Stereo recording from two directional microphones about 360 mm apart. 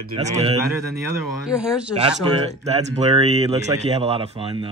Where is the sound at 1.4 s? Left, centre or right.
Centre.